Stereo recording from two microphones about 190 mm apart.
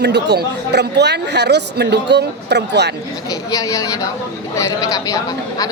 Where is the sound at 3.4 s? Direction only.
15° left (ahead or behind).